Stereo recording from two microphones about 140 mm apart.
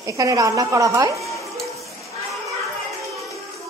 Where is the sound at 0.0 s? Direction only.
25° right (ahead or behind).